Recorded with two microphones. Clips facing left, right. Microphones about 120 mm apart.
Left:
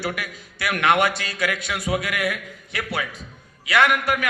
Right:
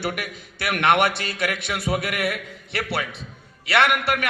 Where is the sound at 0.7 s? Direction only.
60° right (ahead or behind).